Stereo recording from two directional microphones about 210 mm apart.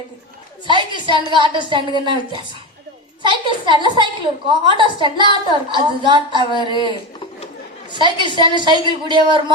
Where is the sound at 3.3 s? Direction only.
20° right (ahead or behind).